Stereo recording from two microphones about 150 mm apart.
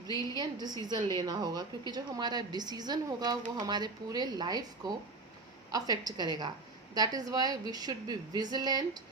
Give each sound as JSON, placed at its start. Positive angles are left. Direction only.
{"t": 0.1, "sound": "a woman's voice", "side_deg": -25}